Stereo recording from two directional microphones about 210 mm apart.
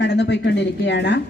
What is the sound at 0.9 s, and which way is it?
Speech, 55° left (ahead or behind).